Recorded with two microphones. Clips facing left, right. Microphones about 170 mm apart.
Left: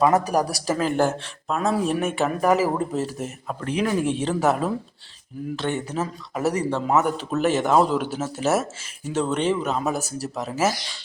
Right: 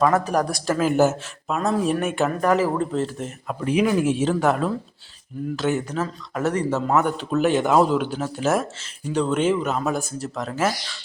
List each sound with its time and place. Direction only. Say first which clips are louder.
0.0 s speech: even; 10° left (ahead or behind)
0.5 s speech: right 2 dB; centre (ahead or behind)
3.6 s speech: right 3 dB; 10° right (ahead or behind); by 10.8 s 5° left (ahead or behind)